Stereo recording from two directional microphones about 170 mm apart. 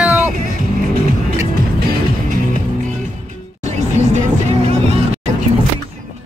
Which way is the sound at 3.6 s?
40° right (ahead or behind).